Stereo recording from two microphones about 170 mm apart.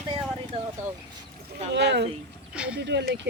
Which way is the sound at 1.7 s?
85° right.